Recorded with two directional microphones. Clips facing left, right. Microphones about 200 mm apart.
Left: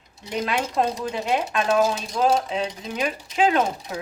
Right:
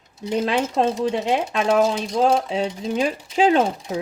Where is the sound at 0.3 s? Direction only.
25° right (ahead or behind).